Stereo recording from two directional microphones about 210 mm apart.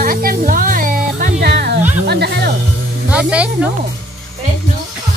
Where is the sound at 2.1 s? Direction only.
50° right (ahead or behind).